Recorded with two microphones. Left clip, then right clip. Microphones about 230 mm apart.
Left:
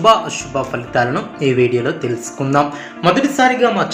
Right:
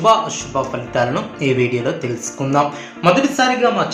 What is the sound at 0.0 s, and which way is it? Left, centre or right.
Speech, left.